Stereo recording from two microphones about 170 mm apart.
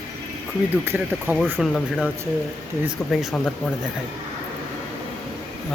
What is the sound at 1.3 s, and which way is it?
Speech, centre (ahead or behind).